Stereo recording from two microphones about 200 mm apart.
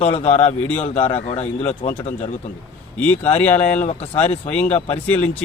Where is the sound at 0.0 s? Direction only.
30° left (ahead or behind).